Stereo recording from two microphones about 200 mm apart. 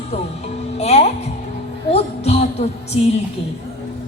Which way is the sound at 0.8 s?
30° left (ahead or behind).